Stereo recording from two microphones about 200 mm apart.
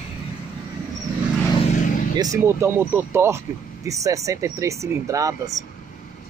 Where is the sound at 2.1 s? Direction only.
15° right (ahead or behind).